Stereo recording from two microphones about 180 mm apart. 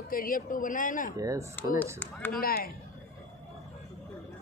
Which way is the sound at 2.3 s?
55° left (ahead or behind).